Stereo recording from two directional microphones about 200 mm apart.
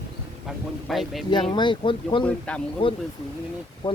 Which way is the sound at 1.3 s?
20° left (ahead or behind).